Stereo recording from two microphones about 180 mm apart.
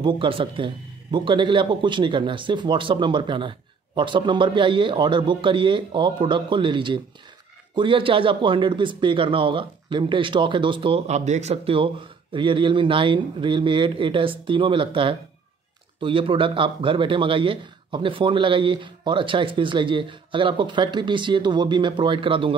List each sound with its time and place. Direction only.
0.0 s a man's voice: 30° right (ahead or behind)